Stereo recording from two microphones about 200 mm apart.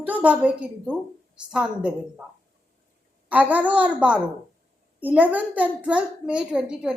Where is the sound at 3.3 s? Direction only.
5° right (ahead or behind).